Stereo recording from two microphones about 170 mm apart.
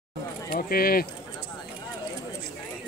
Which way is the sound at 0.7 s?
60° left (ahead or behind).